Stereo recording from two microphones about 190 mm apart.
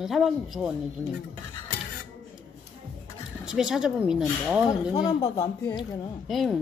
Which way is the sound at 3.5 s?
5° right (ahead or behind).